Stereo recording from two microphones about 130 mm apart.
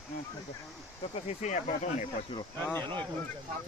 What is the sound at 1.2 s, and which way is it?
Speech, 60° left (ahead or behind).